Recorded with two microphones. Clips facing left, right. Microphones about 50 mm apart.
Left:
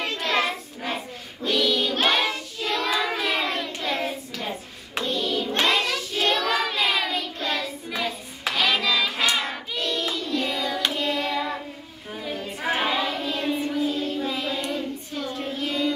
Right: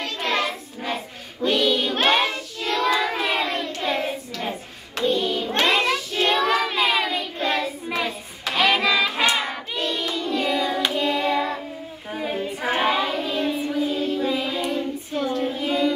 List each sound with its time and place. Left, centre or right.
0.3 s child singing: centre
1.4 s child singing: centre
2.6 s child singing: centre
8.5 s hands: centre
9.4 s hands: centre
12.1 s female singing: right
12.4 s child singing: centre
13.4 s child singing: centre